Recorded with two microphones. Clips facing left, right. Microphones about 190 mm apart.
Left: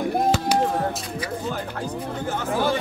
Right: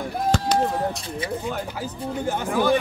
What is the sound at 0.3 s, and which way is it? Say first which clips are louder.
Chop: right 1 dB; 5° left (ahead or behind).